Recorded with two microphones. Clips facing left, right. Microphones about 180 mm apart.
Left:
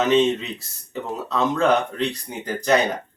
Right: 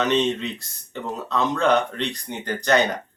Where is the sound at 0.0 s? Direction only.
5° left (ahead or behind).